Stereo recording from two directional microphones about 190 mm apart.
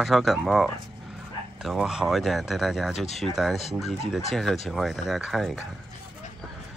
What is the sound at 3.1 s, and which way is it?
Speech, 35° left (ahead or behind).